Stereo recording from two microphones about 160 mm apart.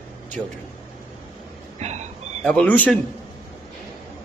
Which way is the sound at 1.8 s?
45° right (ahead or behind).